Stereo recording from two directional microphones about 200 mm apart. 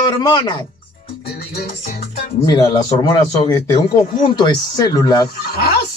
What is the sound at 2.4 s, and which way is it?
Speech, 20° left (ahead or behind).